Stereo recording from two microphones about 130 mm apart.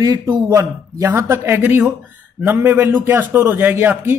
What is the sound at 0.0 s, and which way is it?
Speech, 30° right (ahead or behind).